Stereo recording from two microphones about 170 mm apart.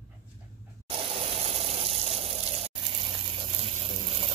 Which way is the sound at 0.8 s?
30° right (ahead or behind).